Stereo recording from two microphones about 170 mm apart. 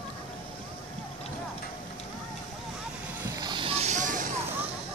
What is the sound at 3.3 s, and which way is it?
Vehicle, 25° right (ahead or behind).